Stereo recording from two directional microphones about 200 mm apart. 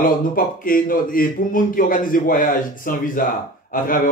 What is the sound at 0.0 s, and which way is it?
A man's voice, 45° left (ahead or behind).